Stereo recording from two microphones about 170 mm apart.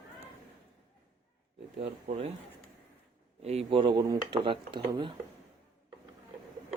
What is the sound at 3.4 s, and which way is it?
Speech, 35° right (ahead or behind).